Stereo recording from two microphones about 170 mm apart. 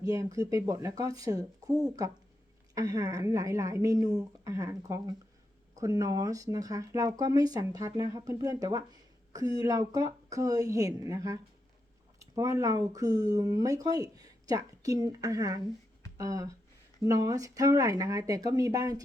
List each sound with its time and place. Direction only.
0.0 s speech: 20° right (ahead or behind)